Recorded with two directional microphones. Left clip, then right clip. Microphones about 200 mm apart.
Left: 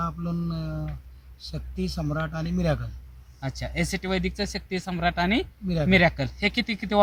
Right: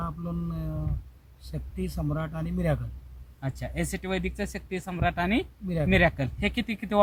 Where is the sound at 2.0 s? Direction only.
5° right (ahead or behind).